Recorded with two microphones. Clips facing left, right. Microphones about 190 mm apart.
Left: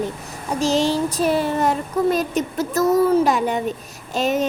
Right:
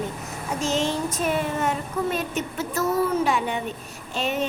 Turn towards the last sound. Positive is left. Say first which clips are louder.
# left 6 dB
turn(degrees=40)  # may be behind; listen again after turning